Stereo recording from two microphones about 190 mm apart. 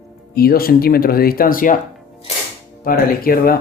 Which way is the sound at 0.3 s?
50° left (ahead or behind).